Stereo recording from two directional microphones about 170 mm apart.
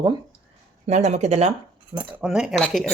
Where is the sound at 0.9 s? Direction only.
40° right (ahead or behind).